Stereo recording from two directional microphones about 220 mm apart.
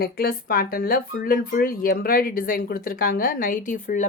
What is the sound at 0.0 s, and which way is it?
A woman's voice, 45° left (ahead or behind).